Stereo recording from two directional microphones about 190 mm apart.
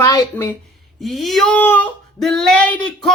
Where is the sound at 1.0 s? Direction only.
Centre (ahead or behind).